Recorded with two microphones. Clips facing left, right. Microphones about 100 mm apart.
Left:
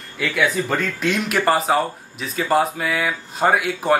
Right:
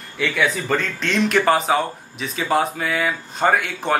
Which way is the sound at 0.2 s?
5° left (ahead or behind).